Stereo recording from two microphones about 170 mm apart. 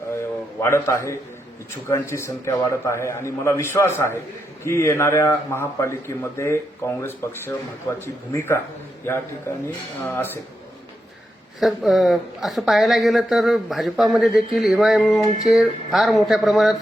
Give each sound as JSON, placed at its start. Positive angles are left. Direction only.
{"t": 0.6, "sound": "a man's voice", "side_deg": 15}
{"t": 10.0, "sound": "a man's voice", "side_deg": 10}
{"t": 11.6, "sound": "speech", "side_deg": 0}